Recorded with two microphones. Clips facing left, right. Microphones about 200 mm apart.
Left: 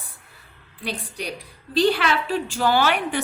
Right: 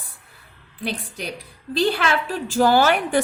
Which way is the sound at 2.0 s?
45° right (ahead or behind).